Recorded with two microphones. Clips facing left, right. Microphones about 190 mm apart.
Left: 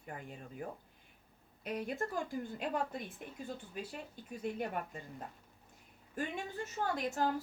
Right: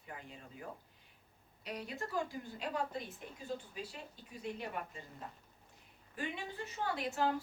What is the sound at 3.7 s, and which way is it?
Speech, 50° left (ahead or behind).